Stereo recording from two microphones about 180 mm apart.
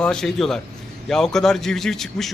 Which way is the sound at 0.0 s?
5° left (ahead or behind).